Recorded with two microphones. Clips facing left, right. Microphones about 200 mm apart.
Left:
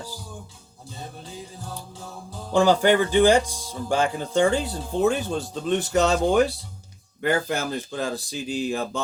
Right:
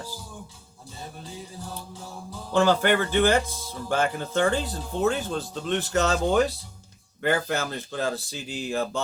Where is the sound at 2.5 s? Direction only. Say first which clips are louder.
Left 3 dB; 15° left (ahead or behind).